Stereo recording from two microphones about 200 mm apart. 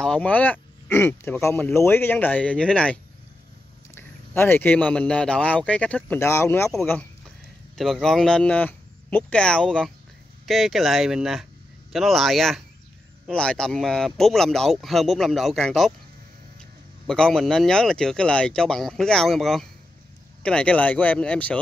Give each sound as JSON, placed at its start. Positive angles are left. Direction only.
{"t": 0.0, "sound": "speech", "side_deg": 5}
{"t": 6.7, "sound": "speech", "side_deg": 5}
{"t": 17.0, "sound": "speech", "side_deg": 5}